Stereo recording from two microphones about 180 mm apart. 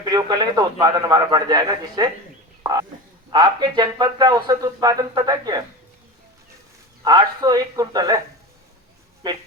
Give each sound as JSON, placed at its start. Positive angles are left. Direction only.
{"t": 0.0, "sound": "speech", "side_deg": -20}
{"t": 3.2, "sound": "speech", "side_deg": -25}
{"t": 7.0, "sound": "speech", "side_deg": -20}
{"t": 9.2, "sound": "speech", "side_deg": -25}